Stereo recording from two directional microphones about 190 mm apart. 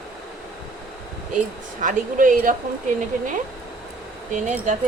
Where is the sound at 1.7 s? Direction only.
45° right (ahead or behind).